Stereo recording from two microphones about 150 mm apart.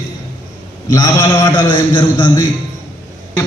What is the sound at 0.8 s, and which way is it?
A man's voice, 25° left (ahead or behind).